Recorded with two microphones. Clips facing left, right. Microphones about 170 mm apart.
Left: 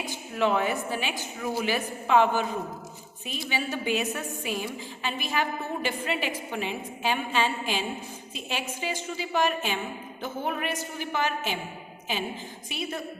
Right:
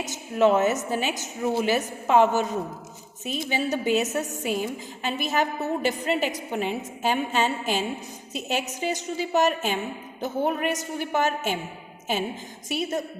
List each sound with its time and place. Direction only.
0.0 s a woman's voice: 45° right (ahead or behind)
1.4 s a man's voice: 25° right (ahead or behind)
1.6 s a woman's voice: 45° right (ahead or behind)
3.5 s a woman's voice: 40° right (ahead or behind)
12.6 s a woman's voice: 45° right (ahead or behind)